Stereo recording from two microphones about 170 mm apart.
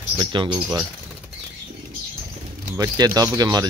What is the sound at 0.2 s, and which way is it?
Speech, 30° right (ahead or behind).